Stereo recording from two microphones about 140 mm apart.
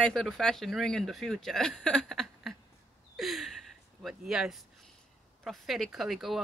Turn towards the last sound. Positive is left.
turn(degrees=0)  # may be behind; listen again after turning